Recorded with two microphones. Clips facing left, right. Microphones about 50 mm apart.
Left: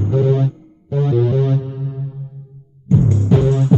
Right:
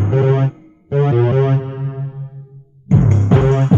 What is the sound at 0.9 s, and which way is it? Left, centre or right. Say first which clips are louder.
Music: right 3 dB; right.